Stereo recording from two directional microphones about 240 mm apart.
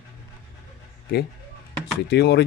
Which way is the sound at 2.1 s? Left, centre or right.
Left.